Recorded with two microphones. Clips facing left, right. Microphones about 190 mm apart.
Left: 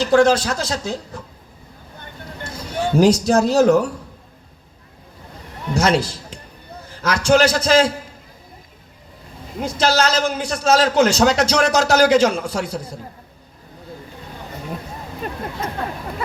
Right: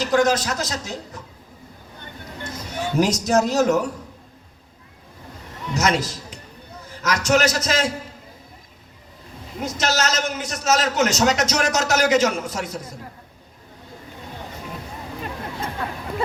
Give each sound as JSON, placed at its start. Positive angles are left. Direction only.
{"t": 0.0, "sound": "a man's voice", "side_deg": 30}
{"t": 2.4, "sound": "a man's voice", "side_deg": 30}
{"t": 5.7, "sound": "a man's voice", "side_deg": 30}
{"t": 9.6, "sound": "a man's voice", "side_deg": 30}